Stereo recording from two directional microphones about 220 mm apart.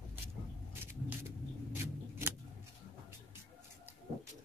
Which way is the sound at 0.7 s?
10° right (ahead or behind).